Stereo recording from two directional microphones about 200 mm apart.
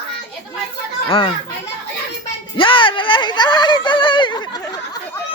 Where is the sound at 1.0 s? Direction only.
25° left (ahead or behind).